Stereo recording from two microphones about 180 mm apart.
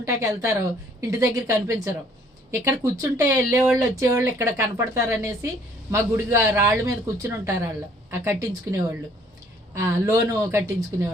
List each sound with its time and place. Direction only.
0.0 s speech: 15° right (ahead or behind)